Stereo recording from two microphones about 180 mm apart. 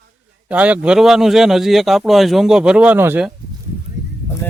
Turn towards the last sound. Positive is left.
turn(degrees=10)  # may be behind; listen again after turning